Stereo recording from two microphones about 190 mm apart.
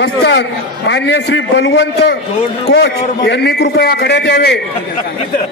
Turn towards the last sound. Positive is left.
turn(degrees=60)  # may be behind; listen again after turning